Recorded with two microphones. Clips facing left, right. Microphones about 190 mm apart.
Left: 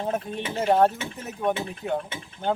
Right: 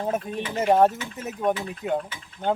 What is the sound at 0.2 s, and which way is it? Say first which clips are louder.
Speech: right 1 dB; 25° left (ahead or behind).